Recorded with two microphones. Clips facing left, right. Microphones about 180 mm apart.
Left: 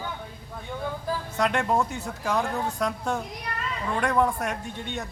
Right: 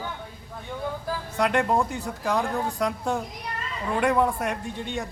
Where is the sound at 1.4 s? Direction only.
Centre (ahead or behind).